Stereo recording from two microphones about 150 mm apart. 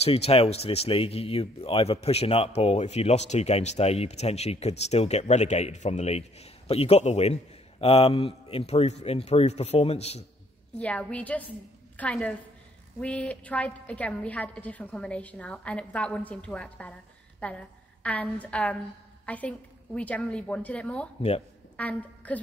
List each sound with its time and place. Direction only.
0.0 s speech: 40° left (ahead or behind)
10.8 s a woman's voice: 10° left (ahead or behind)